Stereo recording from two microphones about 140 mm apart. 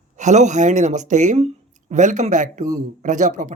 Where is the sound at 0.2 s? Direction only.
60° right (ahead or behind).